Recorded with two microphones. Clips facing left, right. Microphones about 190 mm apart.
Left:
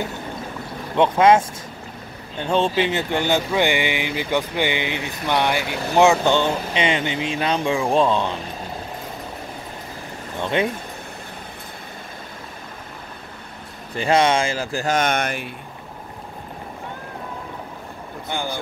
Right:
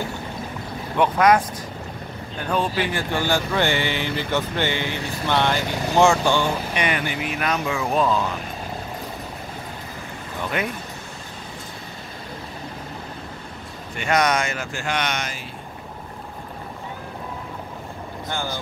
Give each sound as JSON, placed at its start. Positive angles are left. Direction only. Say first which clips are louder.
{"t": 0.9, "sound": "speech", "louder": "left 2 dB", "side_deg": 25}
{"t": 10.4, "sound": "speech", "louder": "left 5 dB", "side_deg": 25}
{"t": 13.9, "sound": "speech", "louder": "left 3 dB", "side_deg": 30}
{"t": 18.3, "sound": "speech", "louder": "left 2 dB", "side_deg": 15}